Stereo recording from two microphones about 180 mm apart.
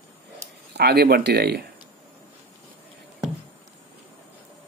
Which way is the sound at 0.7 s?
60° right (ahead or behind).